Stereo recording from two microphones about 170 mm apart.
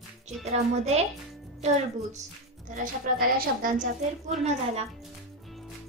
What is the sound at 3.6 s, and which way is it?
A woman's voice, 50° right (ahead or behind).